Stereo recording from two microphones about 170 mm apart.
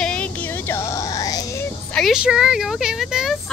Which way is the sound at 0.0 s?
5° left (ahead or behind).